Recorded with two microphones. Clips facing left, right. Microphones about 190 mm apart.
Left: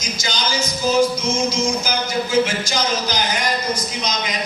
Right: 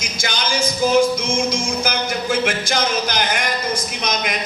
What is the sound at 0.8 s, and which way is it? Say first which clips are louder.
Speech: right 3 dB; 55° right (ahead or behind).